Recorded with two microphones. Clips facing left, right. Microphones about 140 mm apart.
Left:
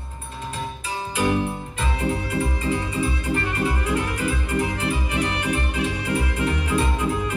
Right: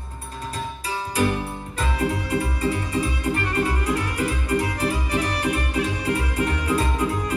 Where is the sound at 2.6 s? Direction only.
35° right (ahead or behind).